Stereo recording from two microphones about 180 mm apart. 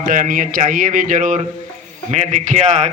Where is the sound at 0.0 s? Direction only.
50° right (ahead or behind).